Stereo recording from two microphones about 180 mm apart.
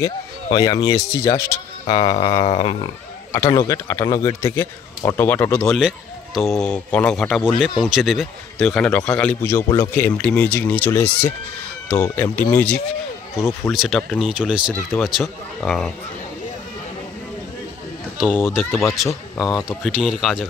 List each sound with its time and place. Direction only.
0.5 s speech: 20° left (ahead or behind)
1.9 s a sound: 25° left (ahead or behind)
3.3 s speech: 15° left (ahead or behind)
5.8 s speech: centre (ahead or behind)
18.4 s speech: 5° right (ahead or behind)